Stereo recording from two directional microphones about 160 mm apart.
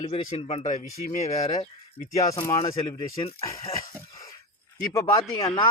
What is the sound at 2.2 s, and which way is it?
Speech, 20° left (ahead or behind).